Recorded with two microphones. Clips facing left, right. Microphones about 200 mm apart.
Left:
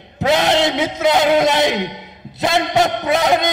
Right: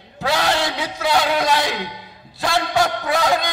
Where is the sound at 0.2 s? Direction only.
20° left (ahead or behind).